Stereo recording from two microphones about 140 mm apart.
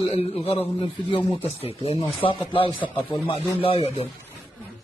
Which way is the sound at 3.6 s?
40° left (ahead or behind).